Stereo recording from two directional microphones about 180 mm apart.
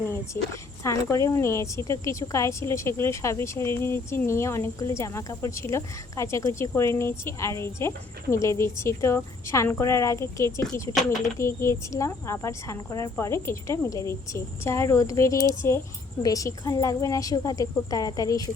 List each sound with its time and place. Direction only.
0.1 s a woman's voice: 15° left (ahead or behind)